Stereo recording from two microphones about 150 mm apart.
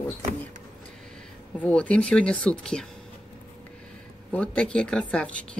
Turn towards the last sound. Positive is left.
turn(degrees=5)  # may be behind; listen again after turning